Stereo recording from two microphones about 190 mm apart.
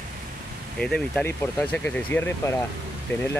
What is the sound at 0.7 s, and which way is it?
Speech, 5° left (ahead or behind).